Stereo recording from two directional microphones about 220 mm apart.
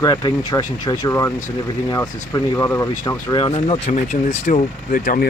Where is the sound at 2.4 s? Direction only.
15° left (ahead or behind).